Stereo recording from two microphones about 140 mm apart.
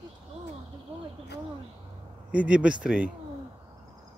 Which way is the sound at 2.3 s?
10° right (ahead or behind).